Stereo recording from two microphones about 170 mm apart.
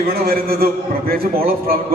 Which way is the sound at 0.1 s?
60° right (ahead or behind).